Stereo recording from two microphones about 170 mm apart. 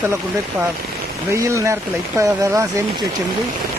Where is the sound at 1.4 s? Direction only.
20° right (ahead or behind).